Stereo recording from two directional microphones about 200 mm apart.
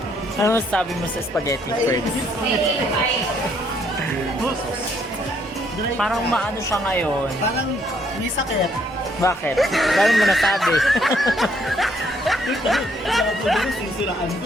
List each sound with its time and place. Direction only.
0.4 s speech: 10° left (ahead or behind)
6.0 s speech: centre (ahead or behind)
9.2 s speech: 15° left (ahead or behind)
9.6 s speech: centre (ahead or behind)